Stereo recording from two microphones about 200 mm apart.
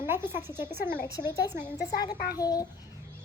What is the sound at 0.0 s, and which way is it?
A child's voice, 10° right (ahead or behind).